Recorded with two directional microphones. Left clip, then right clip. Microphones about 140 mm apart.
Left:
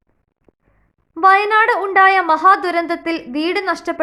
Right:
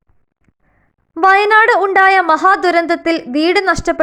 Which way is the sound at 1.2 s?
40° right (ahead or behind).